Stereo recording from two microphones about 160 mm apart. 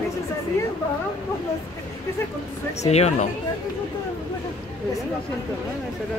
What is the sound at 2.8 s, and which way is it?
Speech, 45° left (ahead or behind).